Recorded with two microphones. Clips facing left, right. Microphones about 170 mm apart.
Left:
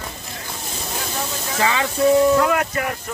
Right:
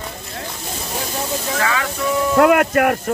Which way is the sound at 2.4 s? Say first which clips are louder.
Right 7 dB; 60° right (ahead or behind).